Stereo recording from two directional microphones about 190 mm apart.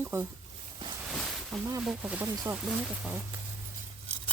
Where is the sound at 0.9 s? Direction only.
5° right (ahead or behind).